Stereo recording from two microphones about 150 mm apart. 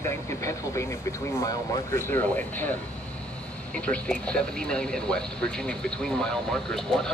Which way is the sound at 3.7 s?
10° left (ahead or behind).